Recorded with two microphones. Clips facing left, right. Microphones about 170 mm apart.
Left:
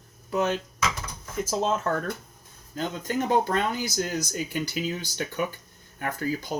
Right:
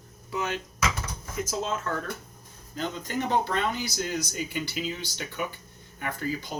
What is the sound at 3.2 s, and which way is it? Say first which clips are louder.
Speech: left 2 dB; 45° left (ahead or behind).